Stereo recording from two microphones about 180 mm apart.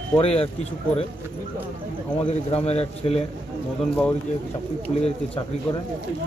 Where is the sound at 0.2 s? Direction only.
35° left (ahead or behind).